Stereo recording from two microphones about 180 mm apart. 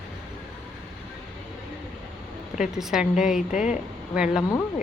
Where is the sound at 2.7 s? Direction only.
Centre (ahead or behind).